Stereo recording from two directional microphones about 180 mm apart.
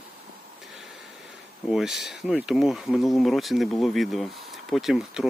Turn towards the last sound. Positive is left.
turn(degrees=0)  # may be behind; listen again after turning